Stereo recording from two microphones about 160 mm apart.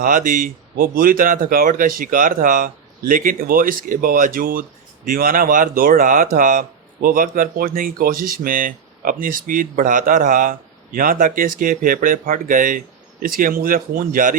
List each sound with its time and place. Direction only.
0.0 s speech: 55° right (ahead or behind)